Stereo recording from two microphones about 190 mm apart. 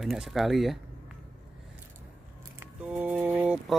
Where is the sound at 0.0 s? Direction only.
Centre (ahead or behind).